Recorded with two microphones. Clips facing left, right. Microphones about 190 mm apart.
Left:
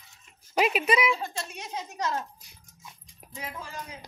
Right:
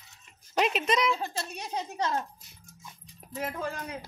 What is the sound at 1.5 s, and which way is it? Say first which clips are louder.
Speech: right 2 dB; 35° right (ahead or behind).